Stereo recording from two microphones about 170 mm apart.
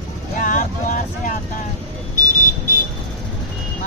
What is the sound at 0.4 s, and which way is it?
Vehicle, 50° left (ahead or behind).